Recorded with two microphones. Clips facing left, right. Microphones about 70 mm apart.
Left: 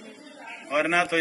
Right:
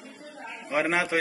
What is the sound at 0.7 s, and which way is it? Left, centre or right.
Speech, right.